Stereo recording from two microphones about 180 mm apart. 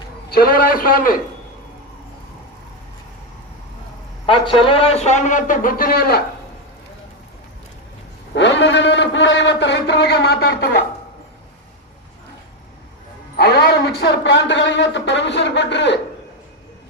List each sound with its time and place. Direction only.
0.3 s a man's voice: 55° left (ahead or behind)
4.3 s a man's voice: 30° left (ahead or behind); by 6.2 s 55° left (ahead or behind)
8.4 s a man's voice: 75° left (ahead or behind); by 10.5 s 60° left (ahead or behind)
13.3 s a man's voice: 60° left (ahead or behind); by 16.0 s 75° left (ahead or behind)